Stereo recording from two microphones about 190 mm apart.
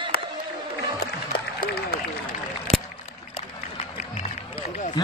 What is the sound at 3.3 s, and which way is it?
Music, 30° left (ahead or behind).